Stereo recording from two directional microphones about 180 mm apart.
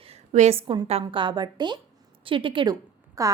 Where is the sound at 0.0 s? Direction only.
40° right (ahead or behind).